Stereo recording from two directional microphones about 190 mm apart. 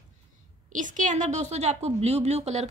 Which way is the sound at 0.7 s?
40° right (ahead or behind).